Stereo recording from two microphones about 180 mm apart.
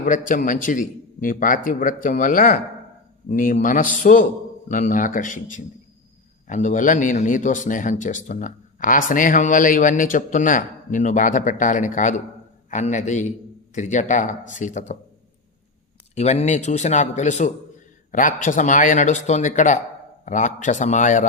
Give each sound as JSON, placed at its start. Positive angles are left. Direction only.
{"t": 0.0, "sound": "speech", "side_deg": 50}
{"t": 16.1, "sound": "speech", "side_deg": 35}